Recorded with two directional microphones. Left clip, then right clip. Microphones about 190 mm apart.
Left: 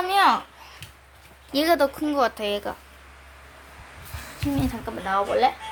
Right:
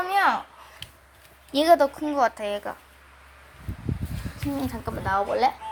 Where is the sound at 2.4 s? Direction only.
10° left (ahead or behind).